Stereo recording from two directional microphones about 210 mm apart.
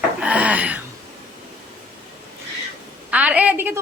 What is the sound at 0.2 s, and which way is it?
Speech, 5° right (ahead or behind).